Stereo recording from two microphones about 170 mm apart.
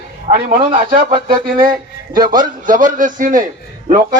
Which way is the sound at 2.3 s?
50° right (ahead or behind).